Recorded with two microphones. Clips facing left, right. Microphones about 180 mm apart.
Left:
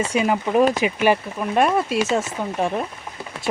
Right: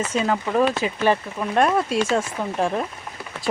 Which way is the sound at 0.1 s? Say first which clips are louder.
Left 2 dB; 15° left (ahead or behind).